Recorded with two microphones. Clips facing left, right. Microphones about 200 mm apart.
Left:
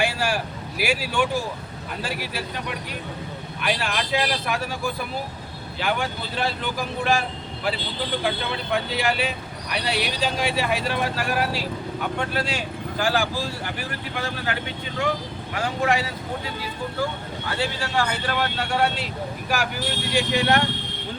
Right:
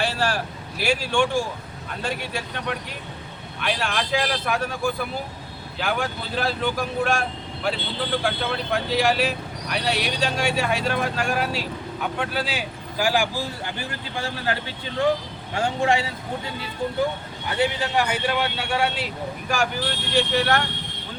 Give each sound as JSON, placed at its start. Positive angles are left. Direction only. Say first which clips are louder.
{"t": 0.0, "sound": "vehicle", "louder": "even", "side_deg": 10}
{"t": 0.8, "sound": "speech", "louder": "right 2 dB", "side_deg": 5}
{"t": 5.8, "sound": "speech", "louder": "even", "side_deg": 0}
{"t": 14.2, "sound": "speech", "louder": "right 2 dB", "side_deg": -30}